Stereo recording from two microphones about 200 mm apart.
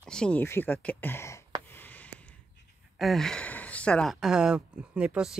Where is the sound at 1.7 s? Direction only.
10° left (ahead or behind).